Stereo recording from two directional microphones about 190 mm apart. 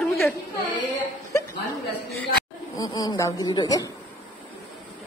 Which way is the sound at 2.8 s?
20° left (ahead or behind).